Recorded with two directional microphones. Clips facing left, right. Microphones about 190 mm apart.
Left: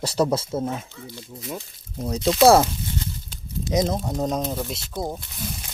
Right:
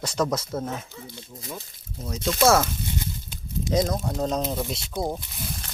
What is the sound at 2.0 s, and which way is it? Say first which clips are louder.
Speech: left 5 dB; 35° left (ahead or behind).